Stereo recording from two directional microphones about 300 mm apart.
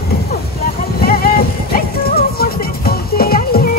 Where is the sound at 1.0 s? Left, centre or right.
Left.